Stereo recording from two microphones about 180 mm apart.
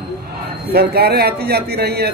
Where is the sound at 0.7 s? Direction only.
60° right (ahead or behind).